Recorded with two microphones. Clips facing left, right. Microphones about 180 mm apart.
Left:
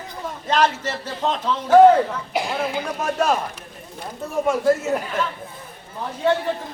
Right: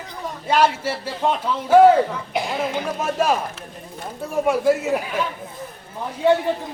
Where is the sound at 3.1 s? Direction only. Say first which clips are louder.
Even; 5° right (ahead or behind).